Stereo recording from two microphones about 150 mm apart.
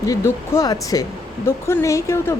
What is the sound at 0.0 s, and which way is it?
Speech, 25° left (ahead or behind).